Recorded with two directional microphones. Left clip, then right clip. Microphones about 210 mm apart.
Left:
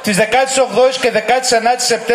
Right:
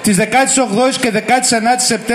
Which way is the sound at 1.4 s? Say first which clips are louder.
Left 1 dB; 30° left (ahead or behind).